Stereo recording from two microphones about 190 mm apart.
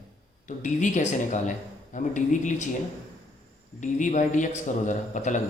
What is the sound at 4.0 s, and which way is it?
Speech, 40° left (ahead or behind).